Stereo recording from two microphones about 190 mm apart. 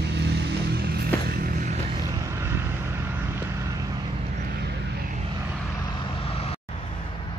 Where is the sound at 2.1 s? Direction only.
15° right (ahead or behind).